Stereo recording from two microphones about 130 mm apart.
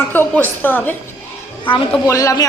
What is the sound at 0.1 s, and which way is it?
Speech, 15° left (ahead or behind).